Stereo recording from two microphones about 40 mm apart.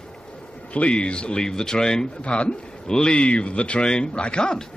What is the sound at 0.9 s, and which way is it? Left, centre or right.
A man's voice, left.